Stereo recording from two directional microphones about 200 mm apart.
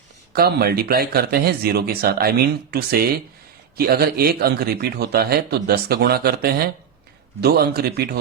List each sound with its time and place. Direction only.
0.3 s a man's voice: 50° right (ahead or behind)